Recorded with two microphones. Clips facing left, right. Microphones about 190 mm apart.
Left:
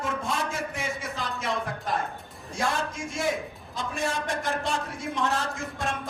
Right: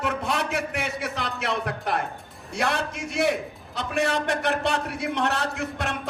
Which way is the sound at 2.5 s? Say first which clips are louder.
Right 2 dB; 70° right (ahead or behind).